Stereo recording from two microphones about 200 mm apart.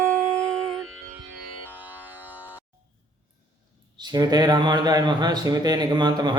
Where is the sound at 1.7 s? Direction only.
10° right (ahead or behind).